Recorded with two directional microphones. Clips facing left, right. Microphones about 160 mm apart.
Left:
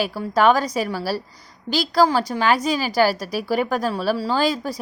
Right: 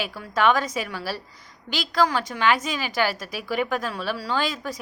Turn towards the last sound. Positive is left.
turn(degrees=35)  # may be behind; listen again after turning